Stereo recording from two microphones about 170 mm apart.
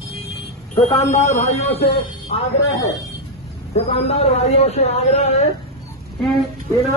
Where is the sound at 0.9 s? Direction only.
40° left (ahead or behind).